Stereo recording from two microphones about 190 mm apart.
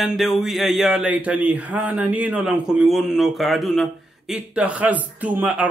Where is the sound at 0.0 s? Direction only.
Centre (ahead or behind).